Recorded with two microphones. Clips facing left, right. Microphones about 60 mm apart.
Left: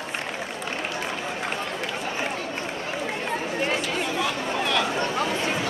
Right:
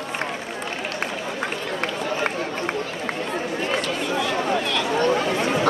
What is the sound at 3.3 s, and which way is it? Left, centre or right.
Run, left.